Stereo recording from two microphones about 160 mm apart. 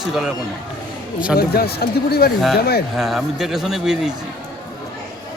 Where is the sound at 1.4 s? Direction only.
75° left (ahead or behind).